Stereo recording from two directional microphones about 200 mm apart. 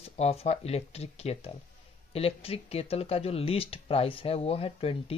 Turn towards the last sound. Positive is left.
turn(degrees=30)  # may be behind; listen again after turning